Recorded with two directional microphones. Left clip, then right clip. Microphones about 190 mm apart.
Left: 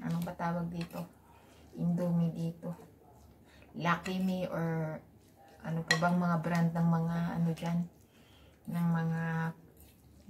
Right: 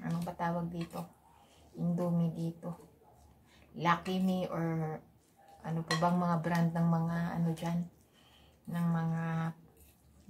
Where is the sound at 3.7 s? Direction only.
15° right (ahead or behind).